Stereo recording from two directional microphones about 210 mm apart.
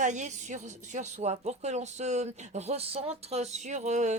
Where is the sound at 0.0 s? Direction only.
35° right (ahead or behind).